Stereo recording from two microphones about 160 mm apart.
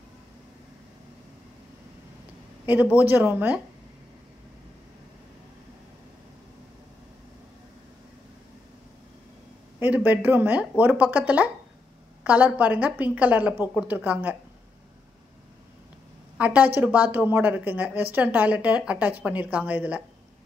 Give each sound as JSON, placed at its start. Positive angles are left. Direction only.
{"t": 2.6, "sound": "a woman's voice", "side_deg": -10}
{"t": 9.8, "sound": "a woman's voice", "side_deg": -10}
{"t": 16.3, "sound": "a woman's voice", "side_deg": -10}